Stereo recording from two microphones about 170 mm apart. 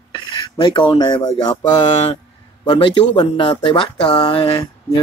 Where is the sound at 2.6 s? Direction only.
25° left (ahead or behind).